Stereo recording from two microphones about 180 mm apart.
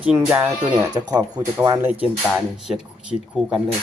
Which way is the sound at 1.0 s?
20° right (ahead or behind).